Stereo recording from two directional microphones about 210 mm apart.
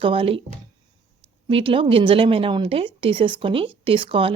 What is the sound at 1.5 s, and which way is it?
A woman's voice, 25° right (ahead or behind).